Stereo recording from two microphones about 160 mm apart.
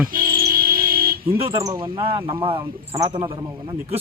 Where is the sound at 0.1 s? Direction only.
60° right (ahead or behind).